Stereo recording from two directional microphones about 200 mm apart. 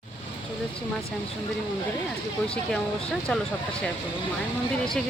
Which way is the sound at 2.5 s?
5° left (ahead or behind).